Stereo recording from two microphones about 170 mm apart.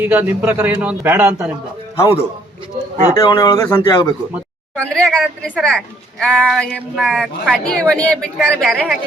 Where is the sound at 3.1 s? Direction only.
20° left (ahead or behind).